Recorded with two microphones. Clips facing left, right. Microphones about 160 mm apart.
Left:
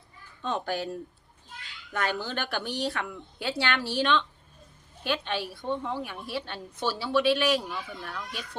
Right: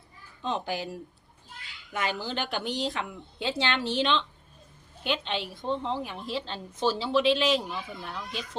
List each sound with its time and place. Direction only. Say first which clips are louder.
0.4 s a woman's voice: left 1 dB; 10° right (ahead or behind)